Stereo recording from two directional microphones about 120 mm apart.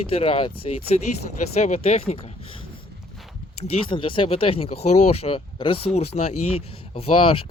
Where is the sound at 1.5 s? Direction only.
65° left (ahead or behind).